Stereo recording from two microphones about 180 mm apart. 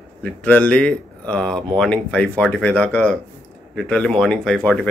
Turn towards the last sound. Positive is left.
turn(degrees=5)  # may be behind; listen again after turning